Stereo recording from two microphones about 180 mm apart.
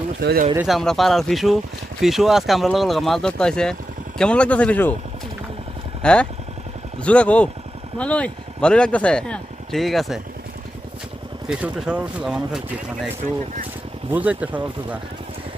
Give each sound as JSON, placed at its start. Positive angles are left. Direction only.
{"t": 0.2, "sound": "speech", "side_deg": -60}
{"t": 0.6, "sound": "speech", "side_deg": 0}
{"t": 6.0, "sound": "speech", "side_deg": 5}
{"t": 11.4, "sound": "speech", "side_deg": -5}
{"t": 14.1, "sound": "speech", "side_deg": -10}